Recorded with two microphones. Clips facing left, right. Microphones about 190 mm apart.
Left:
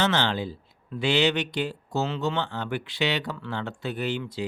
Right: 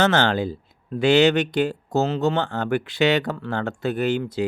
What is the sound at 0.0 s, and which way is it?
Speech, 45° right (ahead or behind).